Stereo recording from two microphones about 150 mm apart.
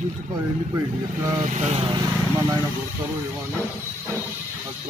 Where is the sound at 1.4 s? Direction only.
50° right (ahead or behind).